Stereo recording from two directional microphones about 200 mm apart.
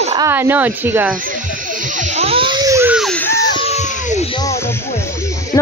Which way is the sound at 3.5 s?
30° left (ahead or behind).